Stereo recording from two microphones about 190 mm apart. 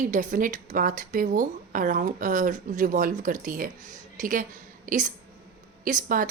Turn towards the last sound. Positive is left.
turn(degrees=-45)  # may be behind; listen again after turning